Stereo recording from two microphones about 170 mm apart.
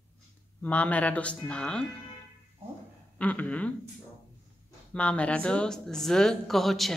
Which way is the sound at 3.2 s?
10° left (ahead or behind).